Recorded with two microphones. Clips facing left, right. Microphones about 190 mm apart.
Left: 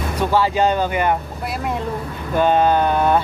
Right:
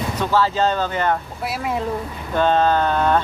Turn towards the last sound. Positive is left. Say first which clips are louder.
# left 2 dB
turn(degrees=15)  # may be behind; listen again after turning